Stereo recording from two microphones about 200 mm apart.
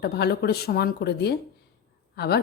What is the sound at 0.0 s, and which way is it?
A woman's voice, 55° left (ahead or behind).